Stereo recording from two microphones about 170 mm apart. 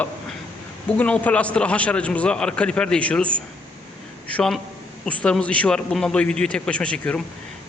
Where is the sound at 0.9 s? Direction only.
5° left (ahead or behind).